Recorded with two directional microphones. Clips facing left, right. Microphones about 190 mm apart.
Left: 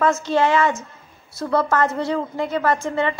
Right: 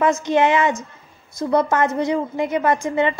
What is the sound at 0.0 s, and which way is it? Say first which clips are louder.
A woman's voice: right 1 dB; 15° right (ahead or behind).